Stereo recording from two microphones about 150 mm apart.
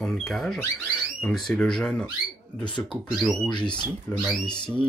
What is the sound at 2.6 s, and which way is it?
Speech, 35° left (ahead or behind).